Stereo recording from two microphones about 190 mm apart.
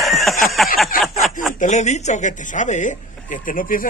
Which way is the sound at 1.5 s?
40° left (ahead or behind).